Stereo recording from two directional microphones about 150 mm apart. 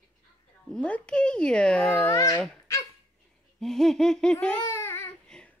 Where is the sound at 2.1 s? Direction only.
20° left (ahead or behind).